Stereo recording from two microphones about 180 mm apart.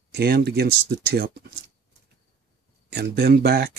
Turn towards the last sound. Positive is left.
turn(degrees=-65)  # may be behind; listen again after turning